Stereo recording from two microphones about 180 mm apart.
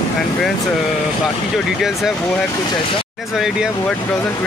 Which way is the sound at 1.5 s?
Centre (ahead or behind).